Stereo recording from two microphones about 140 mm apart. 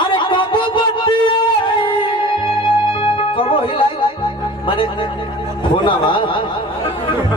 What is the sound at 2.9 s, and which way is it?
Music, 40° left (ahead or behind).